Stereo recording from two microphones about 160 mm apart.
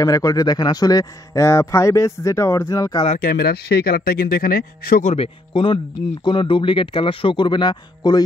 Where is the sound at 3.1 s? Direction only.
70° left (ahead or behind).